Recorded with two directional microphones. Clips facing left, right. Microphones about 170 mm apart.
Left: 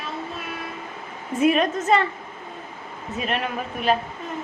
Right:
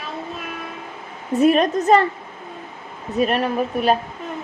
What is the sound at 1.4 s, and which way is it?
Speech, 40° right (ahead or behind).